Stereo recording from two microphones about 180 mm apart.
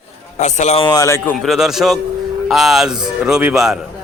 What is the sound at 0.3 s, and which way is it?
Speech, 40° left (ahead or behind).